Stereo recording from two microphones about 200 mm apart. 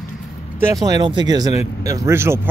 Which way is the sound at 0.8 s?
20° right (ahead or behind).